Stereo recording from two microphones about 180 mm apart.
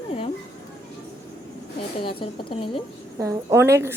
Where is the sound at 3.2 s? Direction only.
15° right (ahead or behind).